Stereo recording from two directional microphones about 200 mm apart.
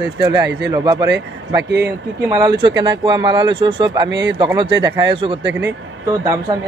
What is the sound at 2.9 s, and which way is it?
Speech, 25° right (ahead or behind).